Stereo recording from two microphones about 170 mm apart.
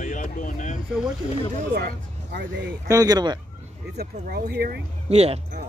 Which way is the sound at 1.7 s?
80° right.